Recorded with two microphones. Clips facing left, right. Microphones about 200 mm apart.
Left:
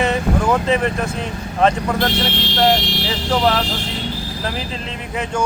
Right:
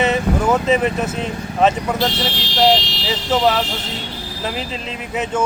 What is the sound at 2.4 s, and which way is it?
Speech, 55° left (ahead or behind).